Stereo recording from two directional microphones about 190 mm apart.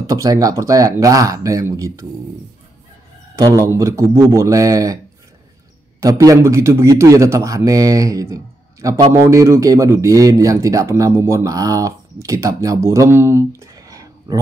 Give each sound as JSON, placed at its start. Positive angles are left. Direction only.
{"t": 0.0, "sound": "speech", "side_deg": -20}
{"t": 3.3, "sound": "speech", "side_deg": -15}
{"t": 5.9, "sound": "speech", "side_deg": -15}